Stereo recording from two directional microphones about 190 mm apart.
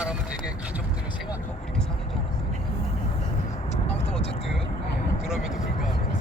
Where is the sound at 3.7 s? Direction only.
35° left (ahead or behind).